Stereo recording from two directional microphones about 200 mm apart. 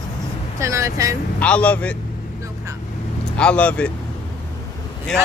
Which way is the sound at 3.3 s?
5° left (ahead or behind).